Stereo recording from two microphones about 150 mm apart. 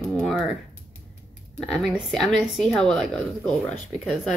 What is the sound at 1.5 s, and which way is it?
Speech, 5° left (ahead or behind).